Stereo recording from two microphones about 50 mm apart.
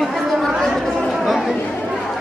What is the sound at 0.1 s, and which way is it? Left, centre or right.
Chatter, centre.